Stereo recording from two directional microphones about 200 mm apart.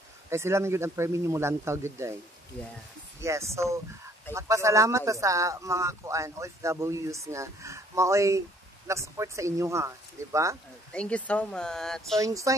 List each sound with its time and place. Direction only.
0.3 s speech: 15° right (ahead or behind)
3.2 s speech: 15° right (ahead or behind)
10.9 s speech: 5° left (ahead or behind)
12.2 s speech: 15° right (ahead or behind)